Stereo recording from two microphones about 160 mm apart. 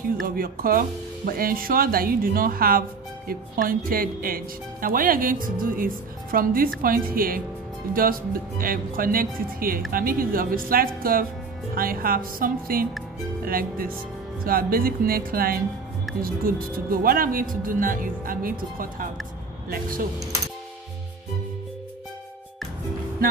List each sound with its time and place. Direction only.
0.2 s speech: 65° right (ahead or behind)